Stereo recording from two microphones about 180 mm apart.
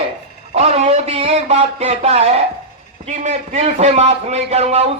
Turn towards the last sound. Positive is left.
turn(degrees=-35)  # may be behind; listen again after turning